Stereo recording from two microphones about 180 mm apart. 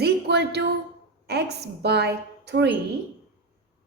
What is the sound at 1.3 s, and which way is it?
A woman's voice, 65° right (ahead or behind).